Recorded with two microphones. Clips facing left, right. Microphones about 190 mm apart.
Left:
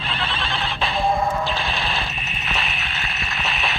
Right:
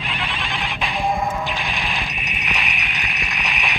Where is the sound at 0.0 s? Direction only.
15° right (ahead or behind).